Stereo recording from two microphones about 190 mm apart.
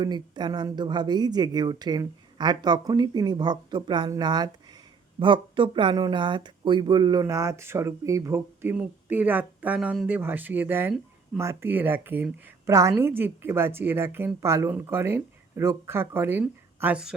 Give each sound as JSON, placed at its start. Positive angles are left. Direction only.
{"t": 0.0, "sound": "a woman's voice", "side_deg": -20}